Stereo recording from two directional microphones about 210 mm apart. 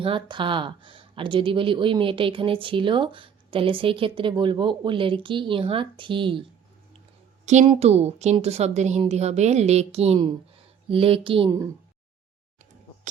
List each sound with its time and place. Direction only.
0.0 s speech: 25° right (ahead or behind)
7.4 s a woman's voice: 30° right (ahead or behind)